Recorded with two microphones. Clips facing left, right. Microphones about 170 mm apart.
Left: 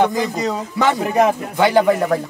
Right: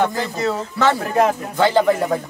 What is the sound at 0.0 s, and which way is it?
Speech, 15° left (ahead or behind).